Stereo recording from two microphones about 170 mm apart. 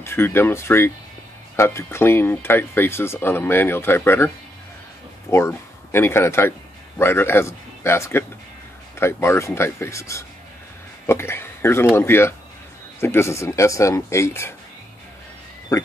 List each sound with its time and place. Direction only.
0.0 s speech: 15° left (ahead or behind)
5.3 s speech: 15° left (ahead or behind)
15.7 s speech: 20° left (ahead or behind)